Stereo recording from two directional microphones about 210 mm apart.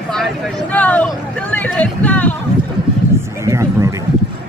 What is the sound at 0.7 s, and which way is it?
Speech, 5° left (ahead or behind).